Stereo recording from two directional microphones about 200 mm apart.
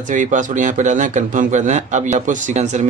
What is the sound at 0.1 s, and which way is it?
A man's voice, 40° right (ahead or behind).